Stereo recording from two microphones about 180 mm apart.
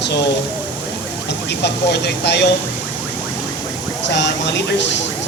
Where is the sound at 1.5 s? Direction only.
65° left (ahead or behind).